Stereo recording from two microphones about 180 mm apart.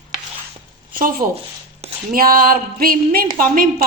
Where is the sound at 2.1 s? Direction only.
55° right (ahead or behind).